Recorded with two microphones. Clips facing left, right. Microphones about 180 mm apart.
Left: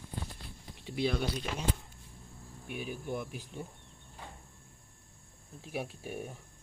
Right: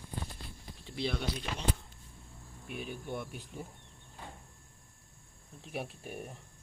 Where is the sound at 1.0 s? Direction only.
5° left (ahead or behind).